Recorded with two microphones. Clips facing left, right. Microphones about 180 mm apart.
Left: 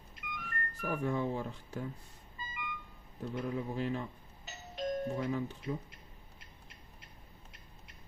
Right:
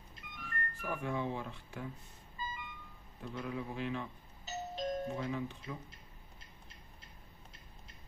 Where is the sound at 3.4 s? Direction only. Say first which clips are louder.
Left 3 dB; 40° left (ahead or behind).